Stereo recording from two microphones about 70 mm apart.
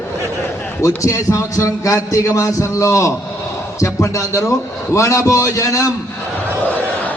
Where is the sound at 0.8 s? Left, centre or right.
Left.